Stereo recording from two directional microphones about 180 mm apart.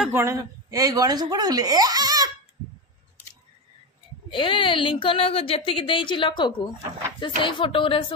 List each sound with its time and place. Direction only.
0.1 s speech: 15° right (ahead or behind)
4.3 s a woman's voice: 25° left (ahead or behind)